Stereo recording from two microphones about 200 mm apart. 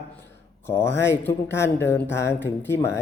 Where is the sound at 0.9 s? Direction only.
60° left (ahead or behind).